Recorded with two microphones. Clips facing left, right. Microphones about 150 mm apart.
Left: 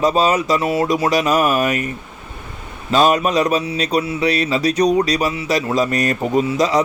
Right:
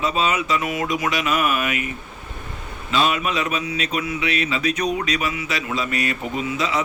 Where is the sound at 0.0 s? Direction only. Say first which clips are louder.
Left 6 dB; 40° left (ahead or behind).